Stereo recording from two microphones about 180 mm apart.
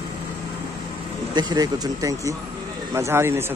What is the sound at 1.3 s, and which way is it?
A man's voice, 20° right (ahead or behind).